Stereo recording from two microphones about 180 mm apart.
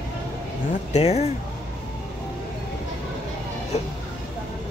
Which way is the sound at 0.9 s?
40° left (ahead or behind).